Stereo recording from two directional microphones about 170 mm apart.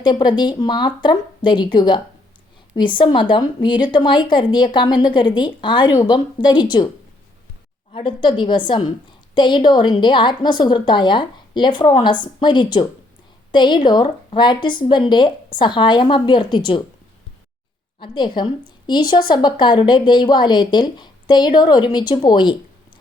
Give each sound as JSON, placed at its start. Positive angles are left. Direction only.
{"t": 0.0, "sound": "a woman's voice", "side_deg": 25}
{"t": 7.9, "sound": "a woman's voice", "side_deg": 30}
{"t": 18.0, "sound": "a woman's voice", "side_deg": 30}